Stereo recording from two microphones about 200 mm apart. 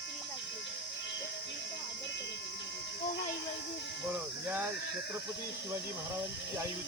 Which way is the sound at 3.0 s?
60° left (ahead or behind).